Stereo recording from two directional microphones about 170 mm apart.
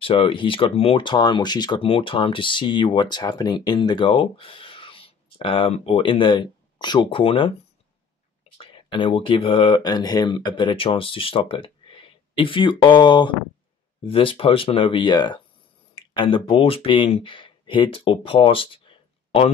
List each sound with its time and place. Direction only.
0.0 s speech: 30° left (ahead or behind)
8.5 s speech: 30° left (ahead or behind)